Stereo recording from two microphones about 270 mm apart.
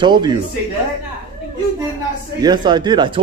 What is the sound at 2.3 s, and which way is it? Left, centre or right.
Speech, centre.